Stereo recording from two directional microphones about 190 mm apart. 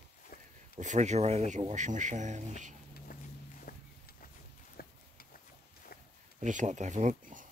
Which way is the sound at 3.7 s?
50° left (ahead or behind).